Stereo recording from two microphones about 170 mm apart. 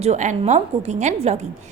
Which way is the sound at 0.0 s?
45° right (ahead or behind).